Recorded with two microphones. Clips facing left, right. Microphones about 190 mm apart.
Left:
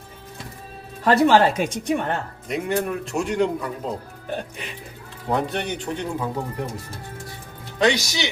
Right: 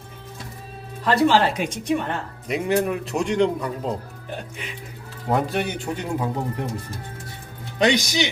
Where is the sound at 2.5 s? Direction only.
Centre (ahead or behind).